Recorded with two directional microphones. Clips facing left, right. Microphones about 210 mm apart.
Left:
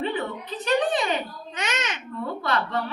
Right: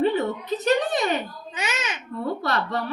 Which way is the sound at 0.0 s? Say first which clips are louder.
Right 6 dB; 40° right (ahead or behind).